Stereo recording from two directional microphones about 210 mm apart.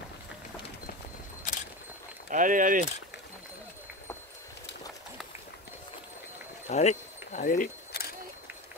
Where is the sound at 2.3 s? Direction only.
40° right (ahead or behind).